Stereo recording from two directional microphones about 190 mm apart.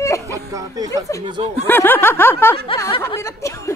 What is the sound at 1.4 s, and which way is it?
Speech, 35° right (ahead or behind).